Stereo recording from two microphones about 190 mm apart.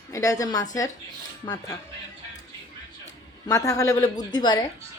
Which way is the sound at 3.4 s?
15° left (ahead or behind).